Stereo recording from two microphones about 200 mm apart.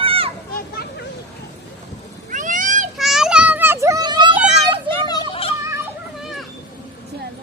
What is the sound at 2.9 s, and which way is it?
Children playing, centre (ahead or behind).